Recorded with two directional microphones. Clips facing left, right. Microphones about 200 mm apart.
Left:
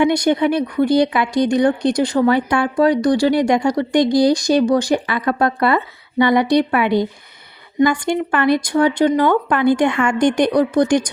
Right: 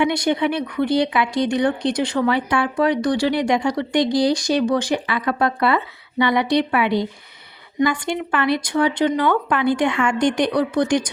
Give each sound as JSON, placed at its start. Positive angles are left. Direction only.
{"t": 0.0, "sound": "speech", "side_deg": 45}